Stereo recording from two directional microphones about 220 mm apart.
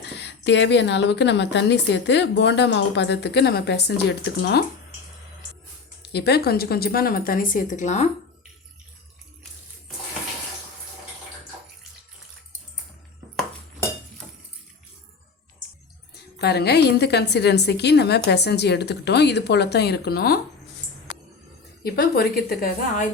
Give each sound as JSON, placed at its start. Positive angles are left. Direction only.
{"t": 0.0, "sound": "a woman's voice", "side_deg": 50}
{"t": 6.0, "sound": "a woman's voice", "side_deg": 50}
{"t": 16.4, "sound": "a woman's voice", "side_deg": 50}
{"t": 21.8, "sound": "a woman's voice", "side_deg": 45}